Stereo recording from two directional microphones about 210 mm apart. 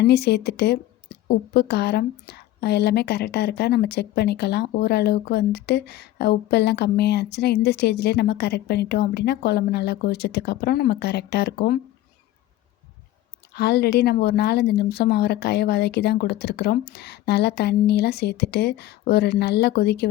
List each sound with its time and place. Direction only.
0.0 s a woman's voice: 50° left (ahead or behind)
13.5 s a woman's voice: 50° left (ahead or behind)